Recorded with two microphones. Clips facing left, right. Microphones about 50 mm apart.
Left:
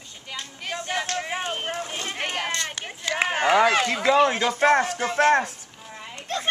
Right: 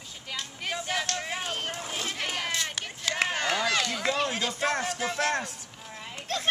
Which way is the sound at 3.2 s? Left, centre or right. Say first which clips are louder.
Left 7 dB; left.